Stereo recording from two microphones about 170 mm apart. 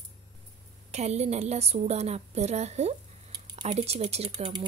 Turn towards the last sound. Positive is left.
turn(degrees=-40)  # may be behind; listen again after turning